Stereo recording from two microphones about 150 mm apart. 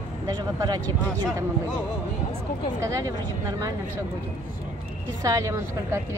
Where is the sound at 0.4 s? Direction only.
25° right (ahead or behind).